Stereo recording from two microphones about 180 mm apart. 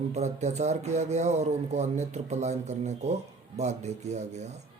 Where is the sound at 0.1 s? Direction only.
40° right (ahead or behind).